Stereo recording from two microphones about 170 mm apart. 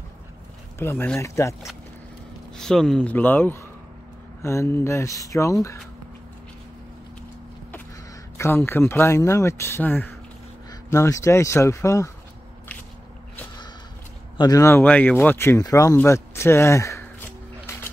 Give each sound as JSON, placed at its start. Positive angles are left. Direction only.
{"t": 0.7, "sound": "speech", "side_deg": 15}
{"t": 2.5, "sound": "speech", "side_deg": 5}
{"t": 8.4, "sound": "speech", "side_deg": 15}
{"t": 14.3, "sound": "speech", "side_deg": 20}